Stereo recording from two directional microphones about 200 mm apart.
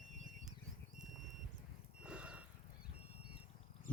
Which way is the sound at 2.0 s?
5° right (ahead or behind).